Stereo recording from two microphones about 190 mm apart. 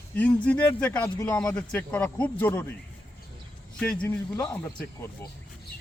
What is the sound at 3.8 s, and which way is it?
A man's voice, 5° left (ahead or behind).